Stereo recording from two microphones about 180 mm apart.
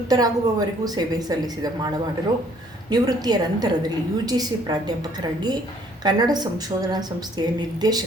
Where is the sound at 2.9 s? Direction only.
20° right (ahead or behind).